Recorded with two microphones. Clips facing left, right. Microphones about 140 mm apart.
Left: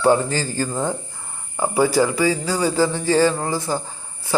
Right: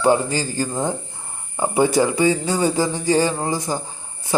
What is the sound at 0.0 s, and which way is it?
Speech, 15° right (ahead or behind).